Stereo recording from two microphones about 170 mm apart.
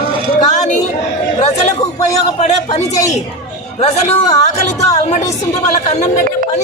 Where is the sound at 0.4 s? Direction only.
45° left (ahead or behind).